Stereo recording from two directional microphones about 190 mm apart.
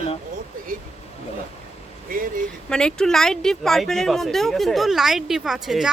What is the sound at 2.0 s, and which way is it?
Speech, 45° right (ahead or behind).